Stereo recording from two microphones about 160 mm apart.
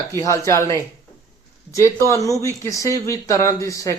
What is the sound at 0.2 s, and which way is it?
Speech, 20° left (ahead or behind).